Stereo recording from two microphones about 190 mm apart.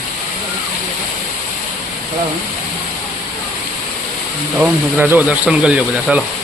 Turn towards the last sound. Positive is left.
turn(degrees=-5)  # may be behind; listen again after turning